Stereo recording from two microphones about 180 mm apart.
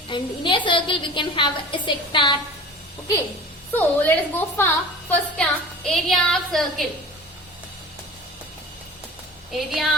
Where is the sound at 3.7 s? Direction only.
10° left (ahead or behind).